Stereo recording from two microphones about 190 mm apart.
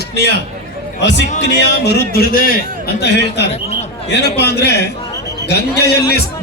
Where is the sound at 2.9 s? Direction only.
60° left (ahead or behind).